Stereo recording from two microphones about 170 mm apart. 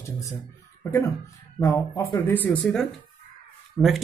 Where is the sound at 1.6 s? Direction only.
20° left (ahead or behind).